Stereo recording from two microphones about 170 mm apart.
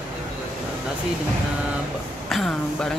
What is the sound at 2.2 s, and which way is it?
Speech, centre (ahead or behind).